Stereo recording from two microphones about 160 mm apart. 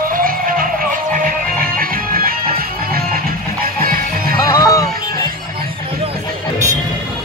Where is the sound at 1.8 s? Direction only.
65° right (ahead or behind).